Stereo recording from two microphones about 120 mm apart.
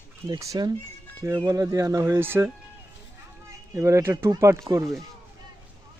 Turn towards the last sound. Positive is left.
turn(degrees=-25)  # may be behind; listen again after turning